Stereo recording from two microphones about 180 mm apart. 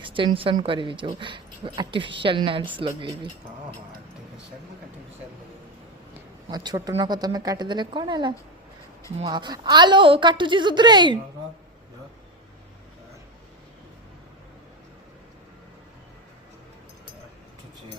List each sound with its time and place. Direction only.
0.0 s a woman's voice: 30° right (ahead or behind)
6.5 s speech: 25° right (ahead or behind)